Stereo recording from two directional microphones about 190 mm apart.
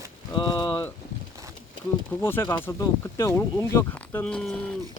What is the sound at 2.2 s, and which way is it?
Speech, 10° left (ahead or behind).